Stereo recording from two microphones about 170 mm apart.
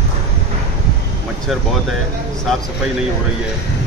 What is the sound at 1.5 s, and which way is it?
Speech, centre (ahead or behind).